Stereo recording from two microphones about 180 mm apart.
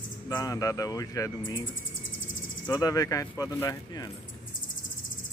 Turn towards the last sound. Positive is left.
turn(degrees=20)  # may be behind; listen again after turning